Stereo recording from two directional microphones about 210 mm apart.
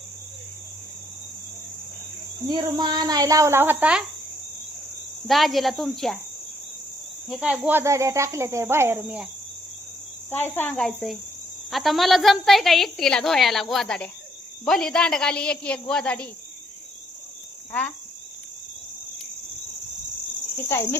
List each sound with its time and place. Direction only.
2.5 s speech: 20° right (ahead or behind)
5.3 s a woman's voice: centre (ahead or behind)
7.3 s speech: 5° right (ahead or behind)
10.2 s cricket: 10° left (ahead or behind)
11.7 s a woman's voice: centre (ahead or behind)
17.7 s speech: 5° left (ahead or behind)
20.7 s cricket: 10° left (ahead or behind)